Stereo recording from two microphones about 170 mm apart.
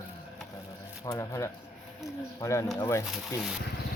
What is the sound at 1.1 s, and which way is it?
Speech, 20° left (ahead or behind).